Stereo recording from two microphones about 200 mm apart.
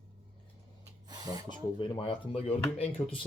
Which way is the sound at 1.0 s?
20° right (ahead or behind).